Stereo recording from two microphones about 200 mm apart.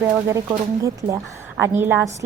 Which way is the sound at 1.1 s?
15° right (ahead or behind).